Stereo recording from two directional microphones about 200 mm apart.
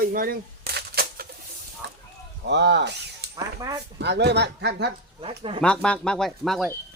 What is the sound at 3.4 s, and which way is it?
Speech, 15° right (ahead or behind).